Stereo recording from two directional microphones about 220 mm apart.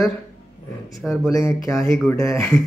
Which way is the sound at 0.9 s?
Centre (ahead or behind).